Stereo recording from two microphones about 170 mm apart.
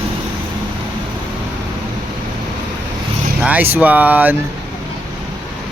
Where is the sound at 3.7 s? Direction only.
10° right (ahead or behind).